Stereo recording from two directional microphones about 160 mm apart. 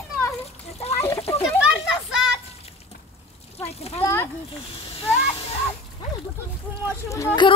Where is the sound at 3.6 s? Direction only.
40° left (ahead or behind).